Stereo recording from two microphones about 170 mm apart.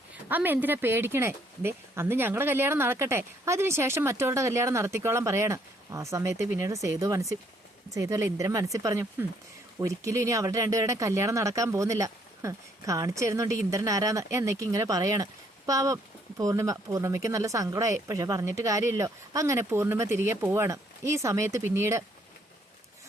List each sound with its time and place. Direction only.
0.3 s speech: 10° right (ahead or behind)